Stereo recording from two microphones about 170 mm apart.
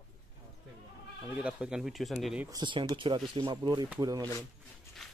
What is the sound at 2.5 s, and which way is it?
Speech, 30° right (ahead or behind).